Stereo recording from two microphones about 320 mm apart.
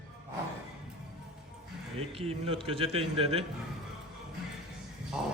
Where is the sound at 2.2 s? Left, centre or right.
Centre.